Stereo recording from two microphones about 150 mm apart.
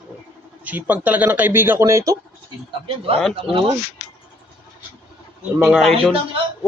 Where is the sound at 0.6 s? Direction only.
10° right (ahead or behind).